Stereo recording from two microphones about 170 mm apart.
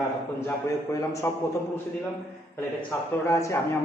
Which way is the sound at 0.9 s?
20° left (ahead or behind).